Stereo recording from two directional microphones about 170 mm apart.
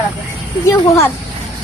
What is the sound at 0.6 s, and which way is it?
Speech, 15° left (ahead or behind).